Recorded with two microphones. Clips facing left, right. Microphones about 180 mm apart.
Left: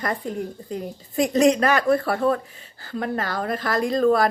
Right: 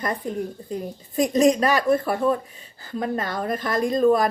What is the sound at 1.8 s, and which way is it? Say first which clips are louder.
Speech: even; 20° right (ahead or behind).